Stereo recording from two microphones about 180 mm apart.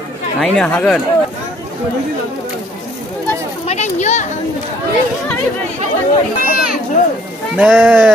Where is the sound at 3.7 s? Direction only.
40° left (ahead or behind).